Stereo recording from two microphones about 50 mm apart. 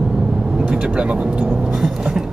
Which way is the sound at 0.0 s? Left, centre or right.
Centre.